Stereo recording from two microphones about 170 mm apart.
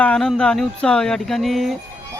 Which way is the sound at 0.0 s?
5° left (ahead or behind).